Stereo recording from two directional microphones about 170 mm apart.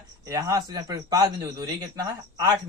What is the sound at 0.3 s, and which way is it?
A man's voice, 20° right (ahead or behind).